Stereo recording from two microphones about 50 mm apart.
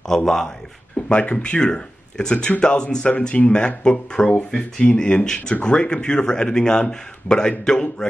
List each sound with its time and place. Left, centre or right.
0.1 s speech: centre
0.9 s speech: left